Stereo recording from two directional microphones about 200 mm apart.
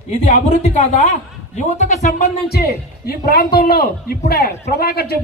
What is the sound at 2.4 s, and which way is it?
A woman's voice, 50° left (ahead or behind).